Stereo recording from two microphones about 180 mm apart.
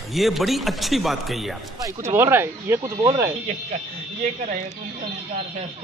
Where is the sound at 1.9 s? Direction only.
15° right (ahead or behind).